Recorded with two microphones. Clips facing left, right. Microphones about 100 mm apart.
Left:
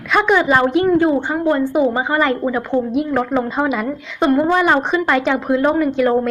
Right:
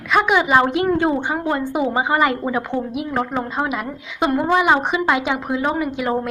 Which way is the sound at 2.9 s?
5° right (ahead or behind).